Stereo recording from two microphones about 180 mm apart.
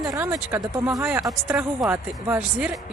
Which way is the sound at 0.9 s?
5° right (ahead or behind).